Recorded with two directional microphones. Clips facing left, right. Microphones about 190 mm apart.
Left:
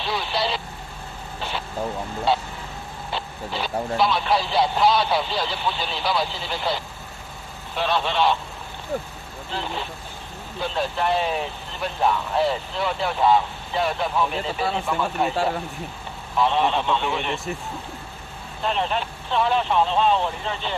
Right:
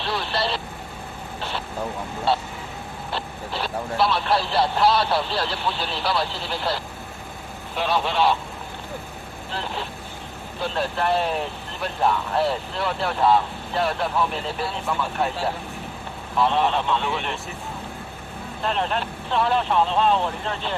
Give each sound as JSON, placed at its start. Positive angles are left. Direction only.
{"t": 0.0, "sound": "vehicle", "side_deg": 0}
{"t": 3.1, "sound": "speech", "side_deg": 0}
{"t": 9.5, "sound": "speech", "side_deg": 0}
{"t": 16.3, "sound": "speech", "side_deg": 0}
{"t": 18.6, "sound": "speech", "side_deg": 0}